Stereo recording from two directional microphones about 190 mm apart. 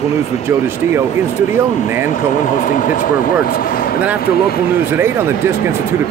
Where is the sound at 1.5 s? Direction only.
10° right (ahead or behind).